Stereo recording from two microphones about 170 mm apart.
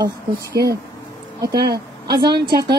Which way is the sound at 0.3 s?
65° right (ahead or behind).